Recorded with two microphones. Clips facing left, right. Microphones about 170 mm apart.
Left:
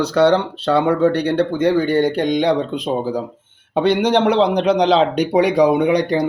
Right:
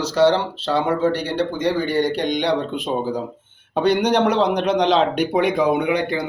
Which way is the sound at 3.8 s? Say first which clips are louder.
Left 2 dB; 25° left (ahead or behind).